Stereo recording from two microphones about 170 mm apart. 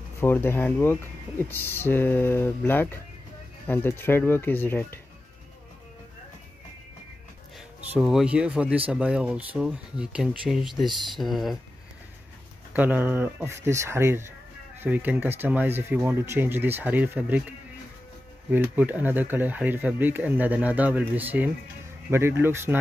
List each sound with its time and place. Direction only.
0.2 s speech: 15° left (ahead or behind)
7.9 s speech: centre (ahead or behind)
12.7 s speech: 10° right (ahead or behind)
18.5 s speech: 10° right (ahead or behind)